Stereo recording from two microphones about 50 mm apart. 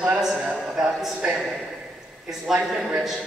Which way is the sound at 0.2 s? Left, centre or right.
Centre.